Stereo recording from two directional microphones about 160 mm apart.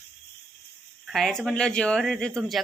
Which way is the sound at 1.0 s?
Centre (ahead or behind).